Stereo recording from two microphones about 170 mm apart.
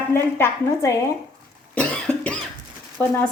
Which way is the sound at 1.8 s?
5° left (ahead or behind).